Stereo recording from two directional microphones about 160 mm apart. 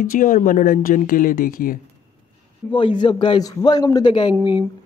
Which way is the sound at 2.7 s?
30° left (ahead or behind).